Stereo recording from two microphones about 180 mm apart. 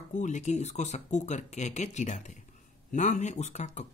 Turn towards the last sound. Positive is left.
turn(degrees=40)  # may be behind; listen again after turning